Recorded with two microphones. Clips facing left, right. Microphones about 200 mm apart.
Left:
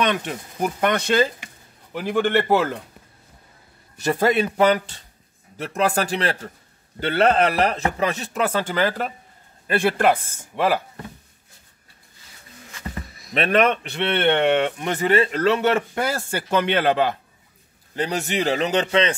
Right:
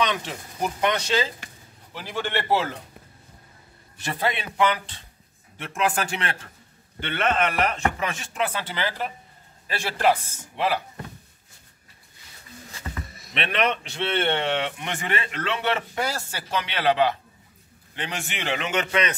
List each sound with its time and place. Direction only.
0.0 s a man's voice: 55° left (ahead or behind)
4.0 s a man's voice: 45° left (ahead or behind)
13.0 s a sound: centre (ahead or behind)
13.3 s a man's voice: 45° left (ahead or behind)
17.9 s speech: 40° left (ahead or behind)